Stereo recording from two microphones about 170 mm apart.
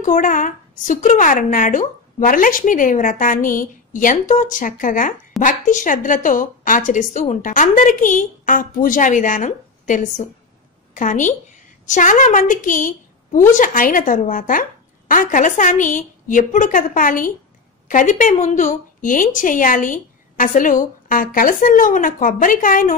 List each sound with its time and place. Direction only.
0.0 s a woman's voice: 50° left (ahead or behind)